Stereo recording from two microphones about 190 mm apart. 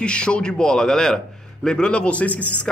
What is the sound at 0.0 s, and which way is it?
A man's voice, 5° left (ahead or behind).